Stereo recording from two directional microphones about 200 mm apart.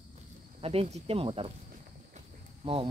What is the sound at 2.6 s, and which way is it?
Speech, 25° right (ahead or behind).